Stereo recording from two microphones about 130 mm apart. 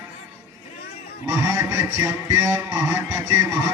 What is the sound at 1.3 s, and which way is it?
Speech, 25° right (ahead or behind).